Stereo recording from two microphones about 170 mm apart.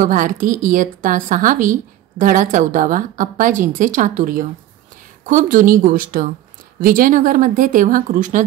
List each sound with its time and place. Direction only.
0.0 s speech: 55° right (ahead or behind)